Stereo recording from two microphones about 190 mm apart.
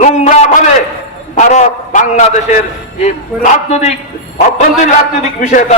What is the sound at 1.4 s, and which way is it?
A man's voice, 40° left (ahead or behind).